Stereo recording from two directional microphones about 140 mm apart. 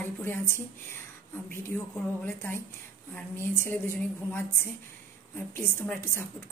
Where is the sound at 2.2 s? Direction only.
15° left (ahead or behind).